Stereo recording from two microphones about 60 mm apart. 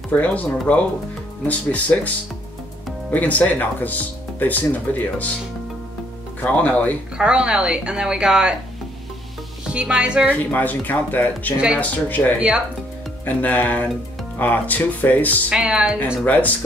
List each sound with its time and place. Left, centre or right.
0.1 s speech: left
3.1 s speech: left
6.4 s speech: left
7.2 s a woman's voice: centre
9.7 s a woman's voice: centre
10.3 s speech: left
11.5 s a woman's voice: centre
11.8 s speech: left
12.4 s a woman's voice: centre
13.2 s speech: left
15.5 s a woman's voice: centre
16.3 s speech: left